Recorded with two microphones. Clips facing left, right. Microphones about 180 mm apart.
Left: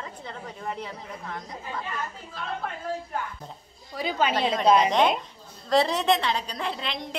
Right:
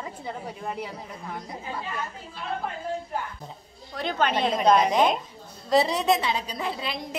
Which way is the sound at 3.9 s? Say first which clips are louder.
Even; 5° left (ahead or behind).